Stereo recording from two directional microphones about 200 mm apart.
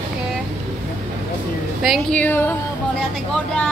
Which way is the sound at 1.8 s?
5° left (ahead or behind).